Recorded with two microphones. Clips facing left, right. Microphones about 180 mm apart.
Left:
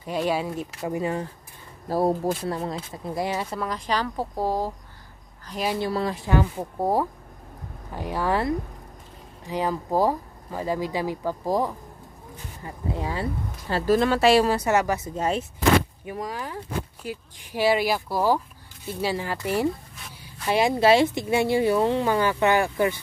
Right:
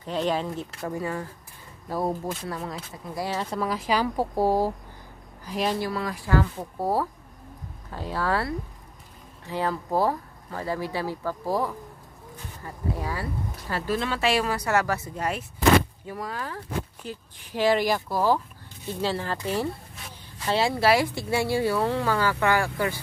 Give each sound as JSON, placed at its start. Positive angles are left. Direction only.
{"t": 0.0, "sound": "speech", "side_deg": 10}
{"t": 1.9, "sound": "speech", "side_deg": 35}
{"t": 3.3, "sound": "speech", "side_deg": 10}
{"t": 3.5, "sound": "speech", "side_deg": -5}
{"t": 5.8, "sound": "speech", "side_deg": 25}
{"t": 13.8, "sound": "speech", "side_deg": 45}